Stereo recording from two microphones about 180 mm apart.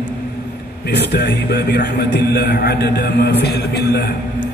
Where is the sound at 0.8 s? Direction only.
70° left (ahead or behind).